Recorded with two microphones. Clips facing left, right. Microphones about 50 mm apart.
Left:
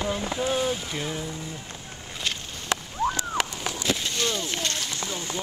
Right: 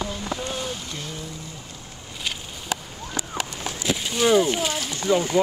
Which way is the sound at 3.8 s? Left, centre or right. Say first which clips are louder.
Right 5 dB; centre.